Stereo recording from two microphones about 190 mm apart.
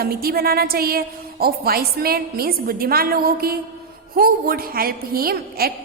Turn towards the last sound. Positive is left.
turn(degrees=-50)  # may be behind; listen again after turning